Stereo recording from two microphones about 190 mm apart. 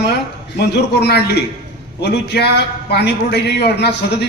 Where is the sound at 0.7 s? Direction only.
60° left (ahead or behind).